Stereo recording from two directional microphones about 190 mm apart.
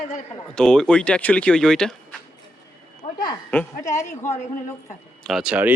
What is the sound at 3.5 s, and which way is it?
Speech, 15° left (ahead or behind).